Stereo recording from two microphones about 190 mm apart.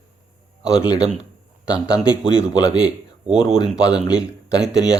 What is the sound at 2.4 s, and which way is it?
Speech, 15° left (ahead or behind).